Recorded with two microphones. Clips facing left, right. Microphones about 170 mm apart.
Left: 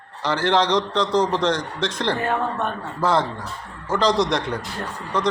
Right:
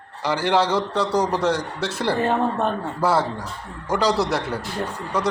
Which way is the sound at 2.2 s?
30° right (ahead or behind).